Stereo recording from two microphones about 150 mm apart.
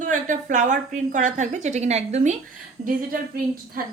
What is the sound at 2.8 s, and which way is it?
Speech, 70° right (ahead or behind).